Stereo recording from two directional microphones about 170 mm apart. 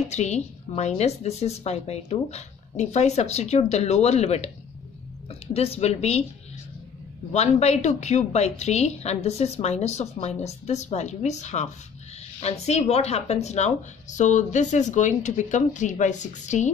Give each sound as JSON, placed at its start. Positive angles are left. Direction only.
{"t": 0.1, "sound": "a woman's voice", "side_deg": 40}
{"t": 7.3, "sound": "a woman's voice", "side_deg": 40}